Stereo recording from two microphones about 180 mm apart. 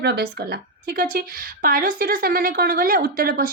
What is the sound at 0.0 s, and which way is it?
A woman's voice, 65° right (ahead or behind).